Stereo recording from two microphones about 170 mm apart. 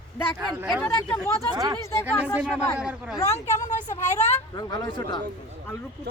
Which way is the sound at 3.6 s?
45° left (ahead or behind).